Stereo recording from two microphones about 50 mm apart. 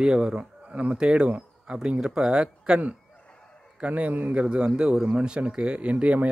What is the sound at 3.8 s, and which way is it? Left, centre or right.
Speech, right.